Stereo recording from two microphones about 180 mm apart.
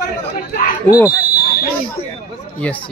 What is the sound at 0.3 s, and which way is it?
Speech, 55° left (ahead or behind).